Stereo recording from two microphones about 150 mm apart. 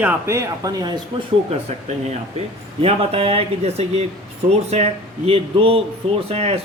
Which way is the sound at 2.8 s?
40° right (ahead or behind).